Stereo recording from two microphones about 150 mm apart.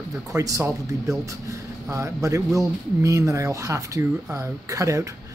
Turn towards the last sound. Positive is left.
turn(degrees=-20)  # may be behind; listen again after turning